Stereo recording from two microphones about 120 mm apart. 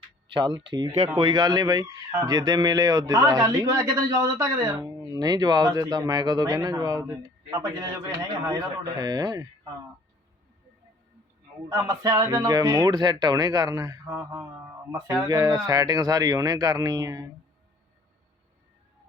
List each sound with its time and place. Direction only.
0.3 s speech: 40° right (ahead or behind)
11.7 s speech: 30° right (ahead or behind)